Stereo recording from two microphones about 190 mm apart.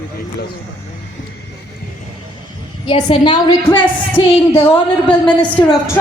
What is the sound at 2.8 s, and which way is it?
Speech, 25° left (ahead or behind).